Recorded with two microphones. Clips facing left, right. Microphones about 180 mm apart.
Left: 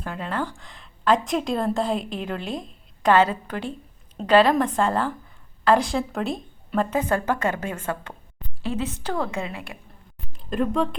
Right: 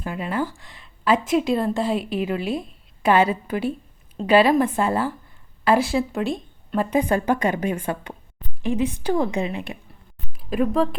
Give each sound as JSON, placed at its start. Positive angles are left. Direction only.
{"t": 0.0, "sound": "a woman's voice", "side_deg": -10}
{"t": 6.9, "sound": "a woman's voice", "side_deg": -15}
{"t": 10.3, "sound": "a sound", "side_deg": -5}